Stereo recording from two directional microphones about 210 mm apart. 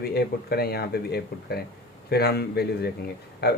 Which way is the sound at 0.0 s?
50° left (ahead or behind).